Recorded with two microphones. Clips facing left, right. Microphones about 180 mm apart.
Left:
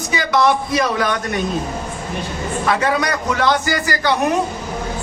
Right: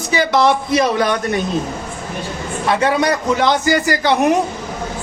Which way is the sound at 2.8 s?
25° right (ahead or behind).